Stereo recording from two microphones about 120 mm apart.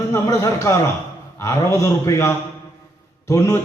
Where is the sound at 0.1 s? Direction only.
25° left (ahead or behind).